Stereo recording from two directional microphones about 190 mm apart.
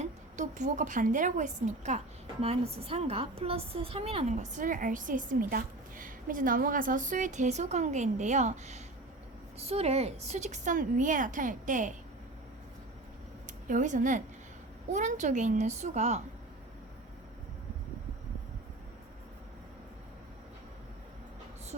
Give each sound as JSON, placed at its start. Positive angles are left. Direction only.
{"t": 0.0, "sound": "a woman's voice", "side_deg": -40}
{"t": 13.7, "sound": "a woman's voice", "side_deg": -40}